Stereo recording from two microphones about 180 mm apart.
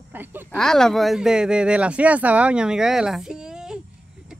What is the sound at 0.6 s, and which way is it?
Speech, 5° left (ahead or behind).